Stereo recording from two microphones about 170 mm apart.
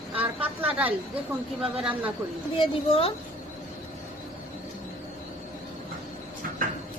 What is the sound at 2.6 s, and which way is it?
Speech, 35° left (ahead or behind).